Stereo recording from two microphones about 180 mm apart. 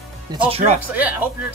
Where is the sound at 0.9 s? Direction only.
10° right (ahead or behind).